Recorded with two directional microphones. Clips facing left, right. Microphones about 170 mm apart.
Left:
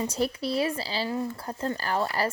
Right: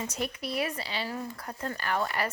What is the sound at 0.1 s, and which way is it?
Speech, 30° left (ahead or behind).